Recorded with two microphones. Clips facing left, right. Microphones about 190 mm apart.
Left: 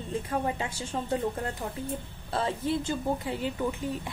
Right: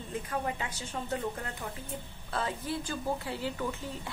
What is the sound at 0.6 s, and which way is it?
A woman's voice, 30° left (ahead or behind).